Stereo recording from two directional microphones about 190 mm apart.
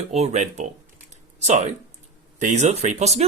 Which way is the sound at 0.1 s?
35° right (ahead or behind).